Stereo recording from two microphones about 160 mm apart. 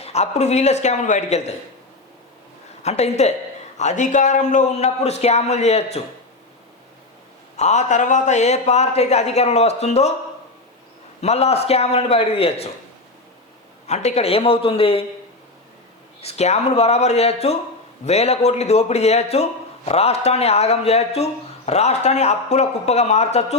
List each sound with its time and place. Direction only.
0.0 s a man's voice: 40° left (ahead or behind)
2.8 s a man's voice: 40° left (ahead or behind)
7.5 s a man's voice: 45° left (ahead or behind)
11.2 s a man's voice: 40° left (ahead or behind)
13.8 s a man's voice: 45° left (ahead or behind)
16.2 s a man's voice: 40° left (ahead or behind)